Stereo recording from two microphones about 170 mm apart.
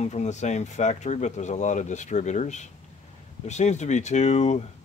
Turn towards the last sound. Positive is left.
turn(degrees=45)  # may be behind; listen again after turning